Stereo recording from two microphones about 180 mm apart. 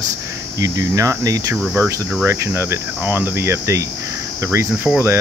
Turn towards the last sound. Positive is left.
turn(degrees=-10)  # may be behind; listen again after turning